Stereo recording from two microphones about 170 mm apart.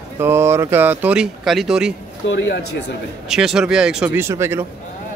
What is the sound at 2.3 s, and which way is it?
Speech, 90° left.